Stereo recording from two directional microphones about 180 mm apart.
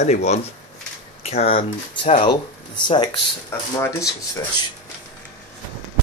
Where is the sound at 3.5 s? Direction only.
15° left (ahead or behind).